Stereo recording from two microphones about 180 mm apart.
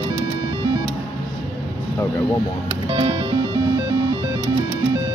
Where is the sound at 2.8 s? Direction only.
25° right (ahead or behind).